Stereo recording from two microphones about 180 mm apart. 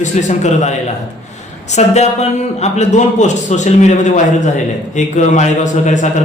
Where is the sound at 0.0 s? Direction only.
40° left (ahead or behind).